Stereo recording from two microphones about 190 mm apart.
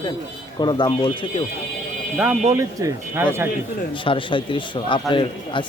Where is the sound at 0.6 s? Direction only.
25° left (ahead or behind).